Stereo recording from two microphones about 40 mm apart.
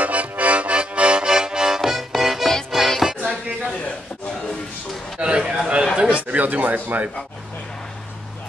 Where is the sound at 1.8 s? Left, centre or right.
Centre.